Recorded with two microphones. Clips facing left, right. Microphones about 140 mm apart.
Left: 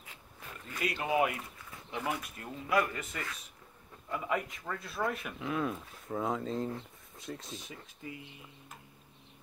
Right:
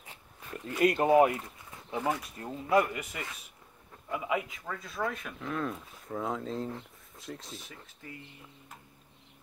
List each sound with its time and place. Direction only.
0.8 s speech: 45° right (ahead or behind)
2.0 s speech: 25° right (ahead or behind)
2.9 s a man's voice: 15° right (ahead or behind)
8.0 s speech: 15° left (ahead or behind)